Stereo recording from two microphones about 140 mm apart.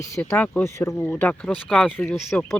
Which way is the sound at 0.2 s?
15° left (ahead or behind).